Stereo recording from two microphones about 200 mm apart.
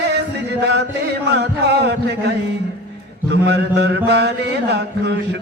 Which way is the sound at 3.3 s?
55° right (ahead or behind).